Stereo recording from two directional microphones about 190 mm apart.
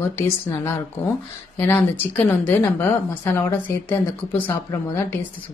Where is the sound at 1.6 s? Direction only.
10° left (ahead or behind).